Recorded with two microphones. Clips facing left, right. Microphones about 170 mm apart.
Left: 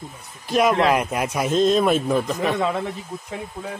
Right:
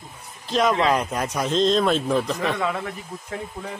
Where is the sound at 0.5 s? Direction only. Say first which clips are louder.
Left 2 dB; 10° left (ahead or behind).